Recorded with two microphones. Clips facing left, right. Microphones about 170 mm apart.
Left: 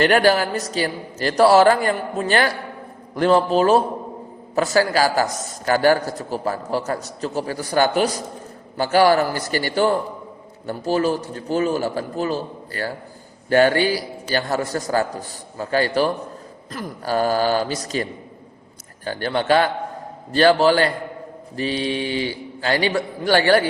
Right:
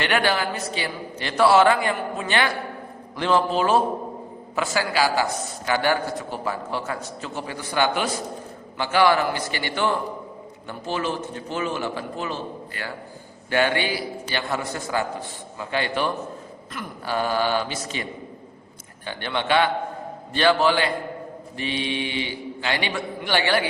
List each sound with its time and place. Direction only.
0.0 s a man's voice: 40° left (ahead or behind)